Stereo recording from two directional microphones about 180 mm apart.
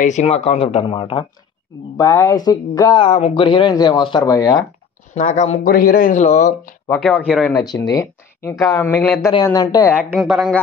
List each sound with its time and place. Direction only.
0.0 s speech: 40° left (ahead or behind)
2.0 s speech: 20° left (ahead or behind)
3.1 s speech: 35° left (ahead or behind)
5.1 s speech: 40° left (ahead or behind)
5.7 s speech: 55° left (ahead or behind)
6.9 s speech: 5° left (ahead or behind)
7.5 s speech: 20° left (ahead or behind)
9.3 s speech: 20° left (ahead or behind)
10.1 s speech: 5° right (ahead or behind)